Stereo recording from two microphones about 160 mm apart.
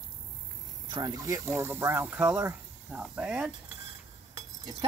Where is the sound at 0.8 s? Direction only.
25° right (ahead or behind); by 3.4 s 10° right (ahead or behind).